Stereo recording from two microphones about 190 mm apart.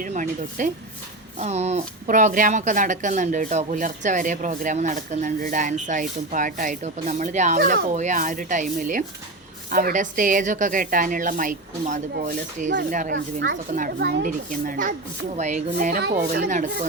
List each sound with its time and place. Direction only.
0.0 s a woman's voice: 45° right (ahead or behind)